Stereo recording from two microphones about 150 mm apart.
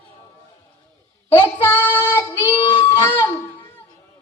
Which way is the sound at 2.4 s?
30° left (ahead or behind).